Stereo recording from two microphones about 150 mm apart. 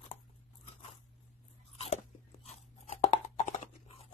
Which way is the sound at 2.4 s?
45° left (ahead or behind).